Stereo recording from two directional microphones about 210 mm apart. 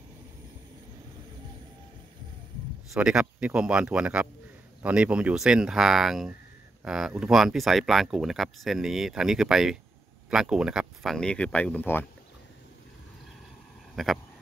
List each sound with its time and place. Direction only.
2.9 s speech: 5° right (ahead or behind)
13.9 s speech: centre (ahead or behind)